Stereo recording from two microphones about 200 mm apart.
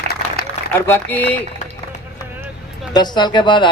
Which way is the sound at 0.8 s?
10° left (ahead or behind).